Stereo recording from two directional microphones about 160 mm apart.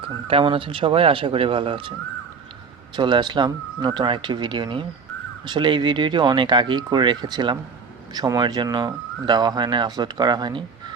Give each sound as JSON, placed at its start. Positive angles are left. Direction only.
{"t": 0.3, "sound": "speech", "side_deg": -35}
{"t": 2.9, "sound": "speech", "side_deg": -30}